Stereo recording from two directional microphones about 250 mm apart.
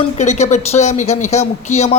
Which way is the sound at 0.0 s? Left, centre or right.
Left.